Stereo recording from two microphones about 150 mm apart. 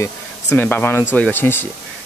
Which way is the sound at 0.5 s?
10° left (ahead or behind).